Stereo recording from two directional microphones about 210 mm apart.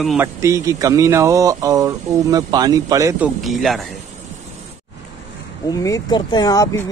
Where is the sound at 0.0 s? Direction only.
Centre (ahead or behind).